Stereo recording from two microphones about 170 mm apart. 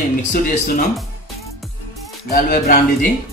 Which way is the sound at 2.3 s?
50° left (ahead or behind).